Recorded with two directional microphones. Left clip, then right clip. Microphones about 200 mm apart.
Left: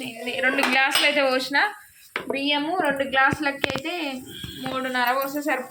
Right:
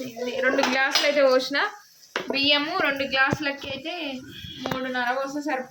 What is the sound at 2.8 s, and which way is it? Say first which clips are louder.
A woman's voice: left 2 dB; 25° right (ahead or behind).